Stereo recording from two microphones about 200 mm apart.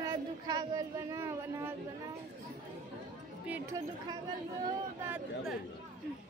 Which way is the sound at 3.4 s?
10° right (ahead or behind).